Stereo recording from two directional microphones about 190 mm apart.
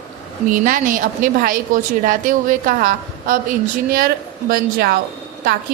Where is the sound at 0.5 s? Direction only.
45° right (ahead or behind).